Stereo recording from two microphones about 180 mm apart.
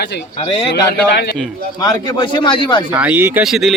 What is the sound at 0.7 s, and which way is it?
Speech, 65° left (ahead or behind).